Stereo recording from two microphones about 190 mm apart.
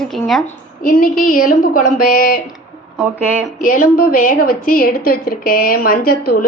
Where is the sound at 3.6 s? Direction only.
45° left (ahead or behind).